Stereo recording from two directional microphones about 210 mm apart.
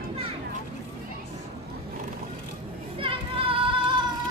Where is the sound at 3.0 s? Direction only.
25° right (ahead or behind).